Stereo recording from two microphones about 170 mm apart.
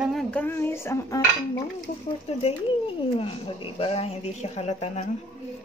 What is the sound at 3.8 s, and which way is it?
Speech, 35° left (ahead or behind).